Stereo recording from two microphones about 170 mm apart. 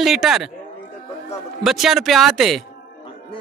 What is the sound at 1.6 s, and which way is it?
A man's voice, centre (ahead or behind).